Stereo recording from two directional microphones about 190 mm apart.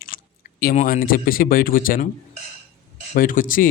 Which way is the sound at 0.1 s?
45° left (ahead or behind).